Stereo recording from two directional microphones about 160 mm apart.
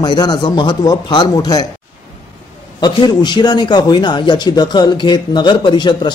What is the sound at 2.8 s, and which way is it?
A man's voice, 25° left (ahead or behind).